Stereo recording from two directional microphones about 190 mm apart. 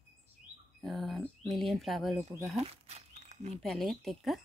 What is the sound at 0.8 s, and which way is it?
Speech, centre (ahead or behind).